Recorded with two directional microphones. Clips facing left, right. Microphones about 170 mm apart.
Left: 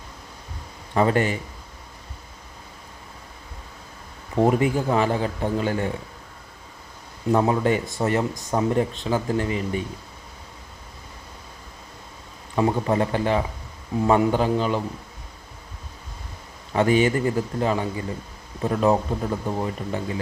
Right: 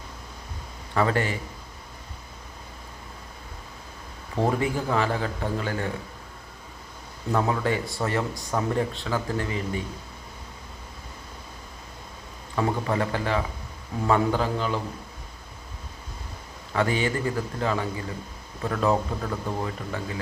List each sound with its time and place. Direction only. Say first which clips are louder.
0.9 s speech: left 4 dB; 20° left (ahead or behind)
4.4 s speech: left 5 dB; 20° left (ahead or behind)
7.3 s speech: left 4 dB; 20° left (ahead or behind)
12.5 s speech: left 4 dB; 20° left (ahead or behind)
16.7 s speech: left 6 dB; 20° left (ahead or behind)